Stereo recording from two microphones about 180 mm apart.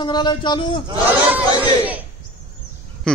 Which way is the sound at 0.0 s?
25° left (ahead or behind).